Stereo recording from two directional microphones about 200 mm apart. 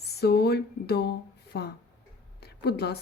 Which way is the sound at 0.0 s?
55° left (ahead or behind).